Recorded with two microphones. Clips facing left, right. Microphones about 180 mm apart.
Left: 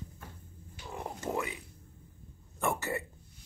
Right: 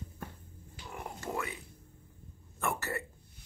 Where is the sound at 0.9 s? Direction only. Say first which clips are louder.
Left 3 dB; 20° left (ahead or behind).